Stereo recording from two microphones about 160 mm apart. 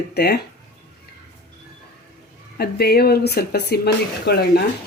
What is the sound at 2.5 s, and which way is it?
Speech, 75° left (ahead or behind).